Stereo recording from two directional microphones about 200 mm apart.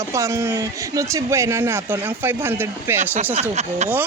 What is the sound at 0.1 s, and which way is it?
Speech, 15° right (ahead or behind).